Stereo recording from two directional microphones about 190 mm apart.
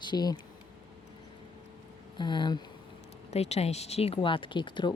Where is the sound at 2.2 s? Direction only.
25° left (ahead or behind).